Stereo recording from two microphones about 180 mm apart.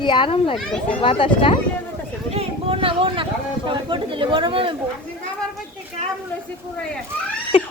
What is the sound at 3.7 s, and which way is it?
Speech, 25° right (ahead or behind).